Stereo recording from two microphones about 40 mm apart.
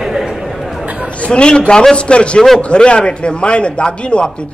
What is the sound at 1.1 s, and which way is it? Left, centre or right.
A man's voice, left.